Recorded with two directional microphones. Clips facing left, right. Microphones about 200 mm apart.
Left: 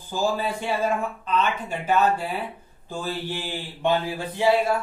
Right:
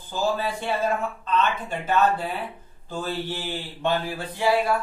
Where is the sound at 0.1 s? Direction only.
10° left (ahead or behind).